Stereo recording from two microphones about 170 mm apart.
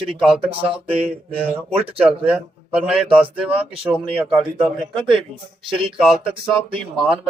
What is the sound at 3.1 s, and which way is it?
Speech, 10° right (ahead or behind).